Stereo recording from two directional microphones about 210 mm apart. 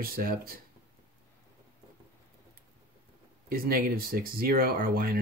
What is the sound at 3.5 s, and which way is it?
Speech, 45° right (ahead or behind).